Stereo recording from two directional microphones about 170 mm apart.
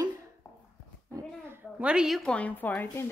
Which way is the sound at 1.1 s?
10° right (ahead or behind).